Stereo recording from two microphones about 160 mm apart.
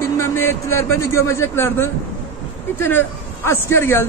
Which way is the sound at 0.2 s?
15° left (ahead or behind).